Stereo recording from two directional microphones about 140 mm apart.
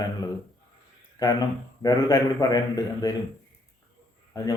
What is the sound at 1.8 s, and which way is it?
A man's voice, 25° left (ahead or behind).